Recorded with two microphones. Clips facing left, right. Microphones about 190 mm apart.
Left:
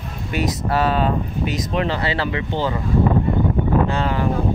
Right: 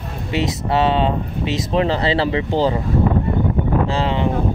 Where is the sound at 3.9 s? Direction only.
25° right (ahead or behind).